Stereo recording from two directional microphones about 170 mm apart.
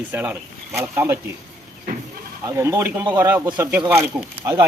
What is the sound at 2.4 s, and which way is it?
Speech, 15° right (ahead or behind).